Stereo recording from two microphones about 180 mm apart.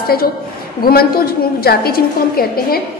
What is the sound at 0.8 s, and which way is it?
A woman's voice, 55° left (ahead or behind).